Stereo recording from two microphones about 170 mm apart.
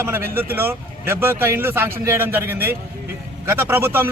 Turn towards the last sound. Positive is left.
turn(degrees=-15)  # may be behind; listen again after turning